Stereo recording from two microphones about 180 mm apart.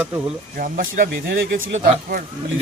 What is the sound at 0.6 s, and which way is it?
Speech, 50° right (ahead or behind).